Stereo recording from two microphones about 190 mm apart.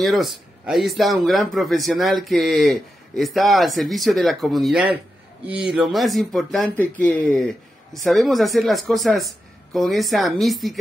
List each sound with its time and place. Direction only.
0.0 s speech: centre (ahead or behind)